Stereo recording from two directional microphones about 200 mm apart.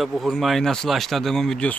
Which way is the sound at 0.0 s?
Centre (ahead or behind).